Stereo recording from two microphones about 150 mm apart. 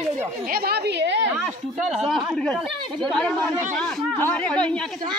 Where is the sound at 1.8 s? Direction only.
Centre (ahead or behind).